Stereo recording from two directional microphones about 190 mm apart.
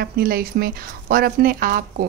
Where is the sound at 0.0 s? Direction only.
50° right (ahead or behind).